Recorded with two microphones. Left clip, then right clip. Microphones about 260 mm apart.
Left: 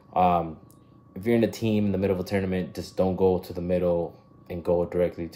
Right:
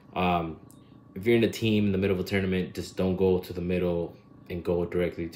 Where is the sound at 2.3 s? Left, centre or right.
Centre.